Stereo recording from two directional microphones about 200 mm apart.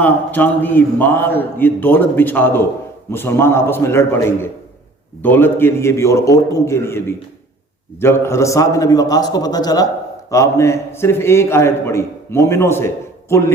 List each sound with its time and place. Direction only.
0.0 s a man's voice: 10° left (ahead or behind)
8.0 s a man's voice: 15° left (ahead or behind)